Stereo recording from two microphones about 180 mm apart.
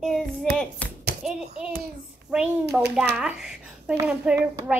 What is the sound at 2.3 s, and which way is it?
A woman's voice, 5° right (ahead or behind).